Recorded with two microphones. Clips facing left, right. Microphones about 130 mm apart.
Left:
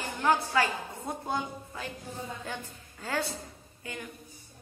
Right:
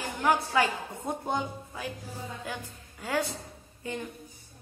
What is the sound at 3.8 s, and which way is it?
Speech, 20° right (ahead or behind).